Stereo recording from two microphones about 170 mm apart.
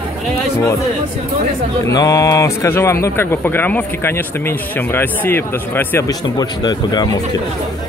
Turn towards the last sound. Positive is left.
turn(degrees=25)  # may be behind; listen again after turning